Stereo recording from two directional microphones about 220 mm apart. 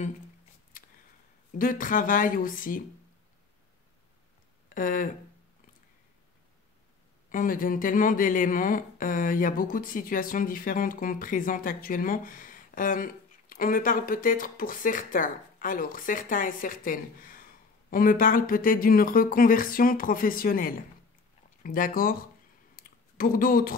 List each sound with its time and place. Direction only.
1.6 s speech: 40° left (ahead or behind)
4.7 s speech: 35° left (ahead or behind)
7.2 s speech: 40° left (ahead or behind)
22.8 s a sound: 40° left (ahead or behind)